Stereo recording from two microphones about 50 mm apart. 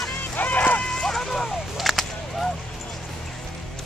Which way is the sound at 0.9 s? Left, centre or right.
Centre.